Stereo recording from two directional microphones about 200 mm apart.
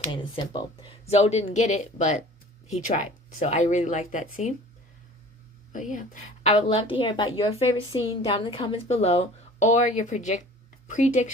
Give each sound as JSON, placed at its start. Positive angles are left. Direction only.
{"t": 0.1, "sound": "speech", "side_deg": 25}
{"t": 5.7, "sound": "a woman's voice", "side_deg": 40}